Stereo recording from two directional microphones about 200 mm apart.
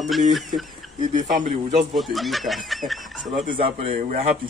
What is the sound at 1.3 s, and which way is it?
Speech, 50° right (ahead or behind).